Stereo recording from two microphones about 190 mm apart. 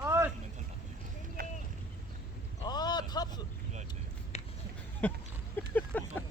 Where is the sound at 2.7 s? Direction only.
20° left (ahead or behind).